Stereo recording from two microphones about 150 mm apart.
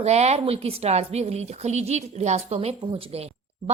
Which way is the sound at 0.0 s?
45° right (ahead or behind).